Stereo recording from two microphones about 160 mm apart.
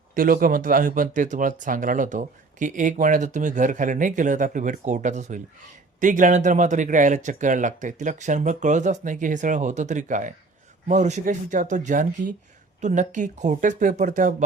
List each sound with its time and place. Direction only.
0.1 s speech: 60° right (ahead or behind)